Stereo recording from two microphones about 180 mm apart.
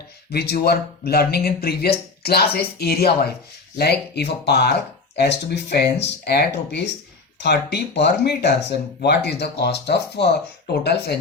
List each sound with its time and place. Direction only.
0.3 s speech: 65° left (ahead or behind)